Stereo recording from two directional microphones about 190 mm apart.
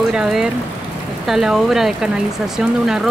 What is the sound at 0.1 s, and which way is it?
Speech, 5° right (ahead or behind).